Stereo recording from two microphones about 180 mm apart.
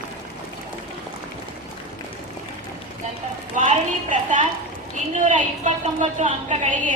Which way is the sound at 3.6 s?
45° right (ahead or behind).